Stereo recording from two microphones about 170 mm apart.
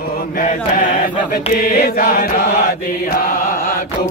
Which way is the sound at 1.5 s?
60° left (ahead or behind).